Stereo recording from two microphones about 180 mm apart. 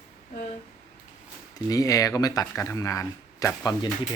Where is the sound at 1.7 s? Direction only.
20° left (ahead or behind).